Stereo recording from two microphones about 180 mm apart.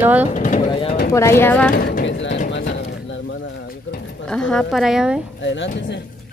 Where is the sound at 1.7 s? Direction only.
60° left (ahead or behind); by 2.3 s 85° left.